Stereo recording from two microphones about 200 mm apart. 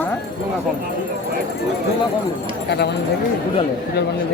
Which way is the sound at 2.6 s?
55° left (ahead or behind).